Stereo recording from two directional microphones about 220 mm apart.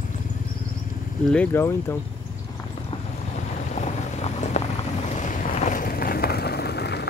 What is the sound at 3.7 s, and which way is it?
Vehicle, 30° left (ahead or behind).